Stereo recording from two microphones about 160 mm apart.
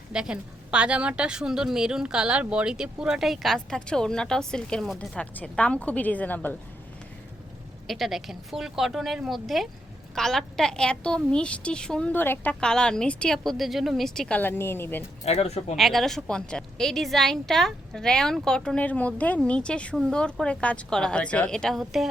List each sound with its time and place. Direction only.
0.1 s a woman's voice: 5° right (ahead or behind); by 6.6 s 10° left (ahead or behind)
7.9 s a woman's voice: centre (ahead or behind)
15.2 s speech: 40° left (ahead or behind)
15.7 s a woman's voice: centre (ahead or behind)